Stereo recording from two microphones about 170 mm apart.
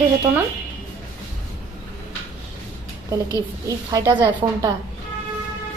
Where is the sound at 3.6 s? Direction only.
20° right (ahead or behind).